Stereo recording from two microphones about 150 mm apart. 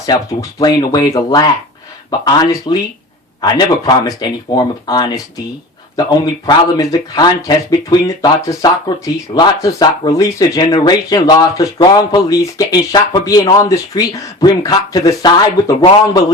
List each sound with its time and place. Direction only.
0.0 s speech: 25° left (ahead or behind)